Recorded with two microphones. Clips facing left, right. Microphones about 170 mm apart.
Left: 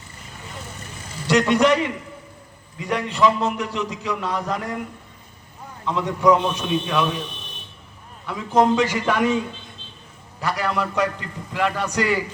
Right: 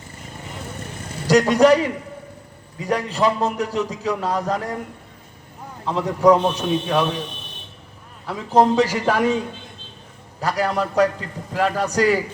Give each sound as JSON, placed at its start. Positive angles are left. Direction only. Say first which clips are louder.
{"t": 1.3, "sound": "a man's voice", "louder": "right 3 dB", "side_deg": -35}
{"t": 5.8, "sound": "a man's voice", "louder": "right 2 dB", "side_deg": -35}
{"t": 8.3, "sound": "a man's voice", "louder": "right 1 dB", "side_deg": -35}
{"t": 10.4, "sound": "a man's voice", "louder": "right 2 dB", "side_deg": -35}